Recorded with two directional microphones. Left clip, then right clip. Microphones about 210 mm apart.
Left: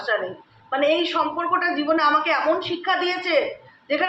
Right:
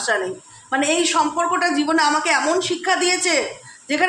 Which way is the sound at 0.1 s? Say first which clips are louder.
Right 2 dB; 50° right (ahead or behind).